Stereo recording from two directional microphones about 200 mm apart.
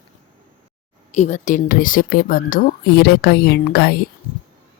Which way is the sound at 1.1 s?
35° left (ahead or behind).